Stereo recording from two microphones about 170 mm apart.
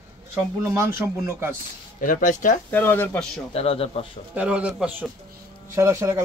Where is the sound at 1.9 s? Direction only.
50° left (ahead or behind).